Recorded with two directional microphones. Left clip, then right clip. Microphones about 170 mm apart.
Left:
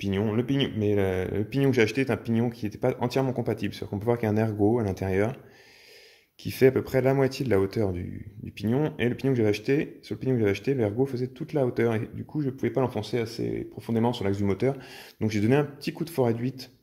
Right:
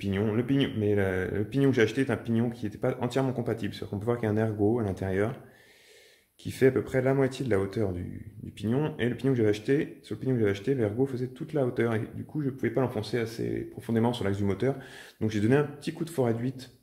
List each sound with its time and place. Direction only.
0.0 s speech: 40° left (ahead or behind)
6.4 s speech: 45° left (ahead or behind)